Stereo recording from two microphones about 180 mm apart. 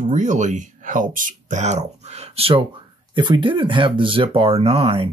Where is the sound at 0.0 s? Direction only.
40° right (ahead or behind).